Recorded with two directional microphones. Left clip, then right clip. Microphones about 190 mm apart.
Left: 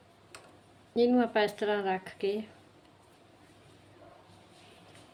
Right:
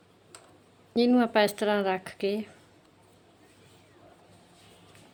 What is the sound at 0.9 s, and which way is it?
Speech, 50° right (ahead or behind).